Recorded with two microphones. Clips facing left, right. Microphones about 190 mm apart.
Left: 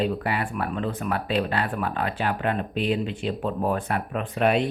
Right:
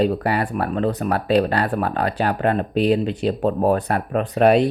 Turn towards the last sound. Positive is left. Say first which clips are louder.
# right 7 dB
turn(degrees=-40)  # may be behind; listen again after turning